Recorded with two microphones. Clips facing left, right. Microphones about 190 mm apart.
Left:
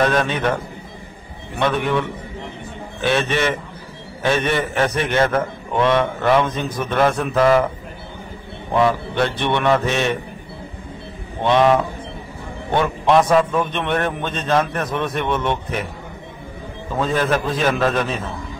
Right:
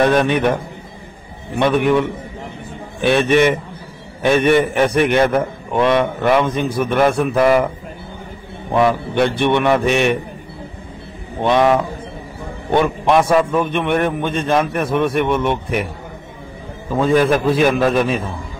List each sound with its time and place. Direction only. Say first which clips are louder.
0.0 s a man's voice: right 4 dB; 15° right (ahead or behind)
1.6 s a man's voice: right 5 dB; 15° right (ahead or behind)
8.7 s a man's voice: right 2 dB; 15° right (ahead or behind)
11.4 s a man's voice: right 1 dB; 10° right (ahead or behind)
12.8 s a man's voice: left 2 dB; 10° right (ahead or behind)
17.0 s a man's voice: right 6 dB; 10° right (ahead or behind)